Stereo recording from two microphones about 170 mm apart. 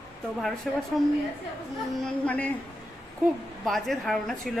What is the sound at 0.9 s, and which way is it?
Speech, centre (ahead or behind).